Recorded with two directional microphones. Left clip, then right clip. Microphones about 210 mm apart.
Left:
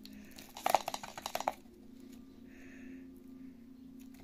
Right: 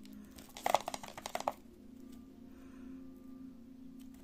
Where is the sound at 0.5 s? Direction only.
30° right (ahead or behind).